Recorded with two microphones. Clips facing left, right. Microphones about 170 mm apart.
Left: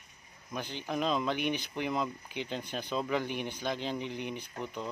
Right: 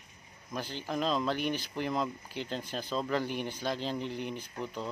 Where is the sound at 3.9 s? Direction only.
15° left (ahead or behind).